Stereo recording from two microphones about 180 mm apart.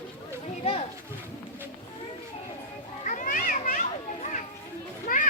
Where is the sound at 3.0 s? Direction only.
50° left (ahead or behind).